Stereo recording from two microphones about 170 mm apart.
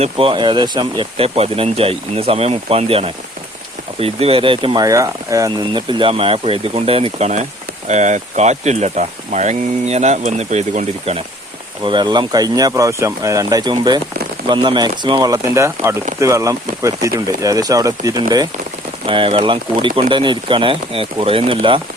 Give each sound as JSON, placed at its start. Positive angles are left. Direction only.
{"t": 0.0, "sound": "speech", "side_deg": -30}
{"t": 11.8, "sound": "speech", "side_deg": -25}